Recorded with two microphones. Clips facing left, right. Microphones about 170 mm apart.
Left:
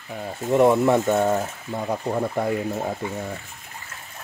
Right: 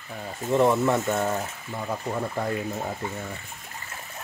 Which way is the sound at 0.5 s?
15° left (ahead or behind).